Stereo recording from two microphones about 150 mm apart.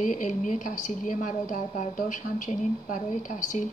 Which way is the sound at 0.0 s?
55° left (ahead or behind).